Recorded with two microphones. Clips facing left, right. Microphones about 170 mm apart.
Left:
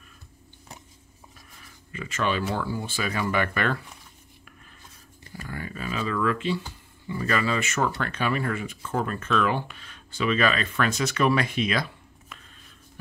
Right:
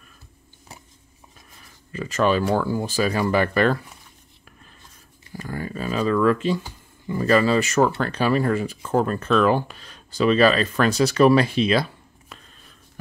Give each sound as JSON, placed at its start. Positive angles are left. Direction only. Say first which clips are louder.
{"t": 1.9, "sound": "speech", "louder": "right 7 dB", "side_deg": -40}
{"t": 5.4, "sound": "a sound", "louder": "right 6 dB", "side_deg": -35}
{"t": 7.1, "sound": "speech", "louder": "right 8 dB", "side_deg": -35}